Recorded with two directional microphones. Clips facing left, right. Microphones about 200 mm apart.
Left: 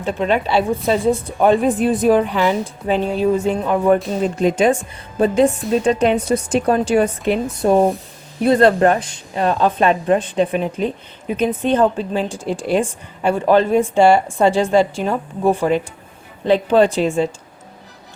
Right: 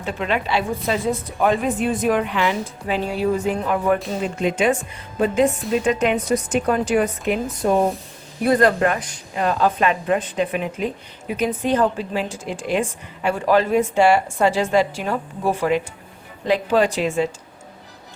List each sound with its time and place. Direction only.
0.0 s a woman's voice: 35° left (ahead or behind)
3.3 s a woman's voice: 25° left (ahead or behind)
4.2 s a woman's voice: 35° left (ahead or behind)
16.5 s a woman's voice: 30° left (ahead or behind)